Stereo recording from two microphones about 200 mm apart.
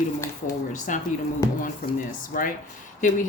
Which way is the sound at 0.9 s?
40° left (ahead or behind).